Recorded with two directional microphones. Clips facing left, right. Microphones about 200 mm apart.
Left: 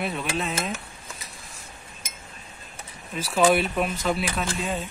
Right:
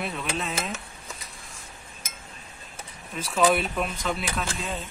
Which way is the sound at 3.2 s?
5° left (ahead or behind).